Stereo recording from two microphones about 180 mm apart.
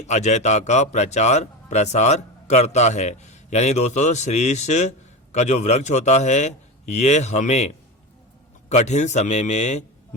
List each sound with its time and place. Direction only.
0.0 s a man's voice: 40° left (ahead or behind)
8.7 s a man's voice: 40° left (ahead or behind)